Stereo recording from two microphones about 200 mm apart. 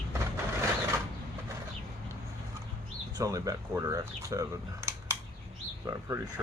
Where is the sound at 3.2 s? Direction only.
15° right (ahead or behind).